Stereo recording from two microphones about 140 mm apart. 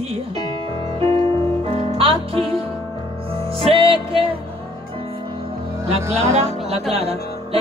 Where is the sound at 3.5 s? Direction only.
45° right (ahead or behind).